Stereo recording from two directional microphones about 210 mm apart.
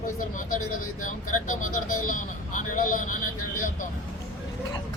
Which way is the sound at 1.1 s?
40° left (ahead or behind).